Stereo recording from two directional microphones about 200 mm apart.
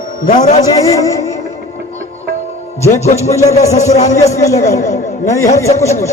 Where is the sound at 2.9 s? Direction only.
30° left (ahead or behind).